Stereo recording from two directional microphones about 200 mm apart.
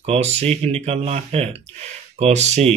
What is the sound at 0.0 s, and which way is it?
Speech, 30° right (ahead or behind).